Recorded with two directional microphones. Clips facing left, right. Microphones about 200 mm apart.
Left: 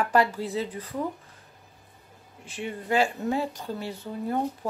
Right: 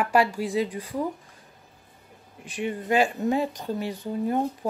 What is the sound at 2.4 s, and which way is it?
Speech, 15° right (ahead or behind).